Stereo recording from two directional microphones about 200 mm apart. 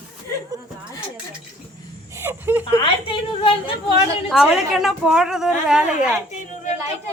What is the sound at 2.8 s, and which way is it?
Speech, 25° left (ahead or behind).